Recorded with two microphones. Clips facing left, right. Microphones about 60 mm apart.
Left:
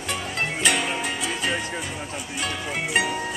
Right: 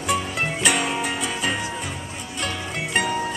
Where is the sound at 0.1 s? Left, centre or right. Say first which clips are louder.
Right 4 dB; centre.